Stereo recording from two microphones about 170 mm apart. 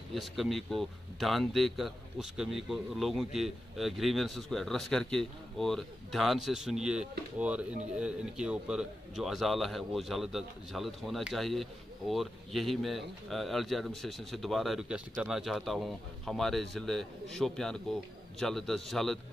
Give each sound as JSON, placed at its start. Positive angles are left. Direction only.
{"t": 0.1, "sound": "speech", "side_deg": 0}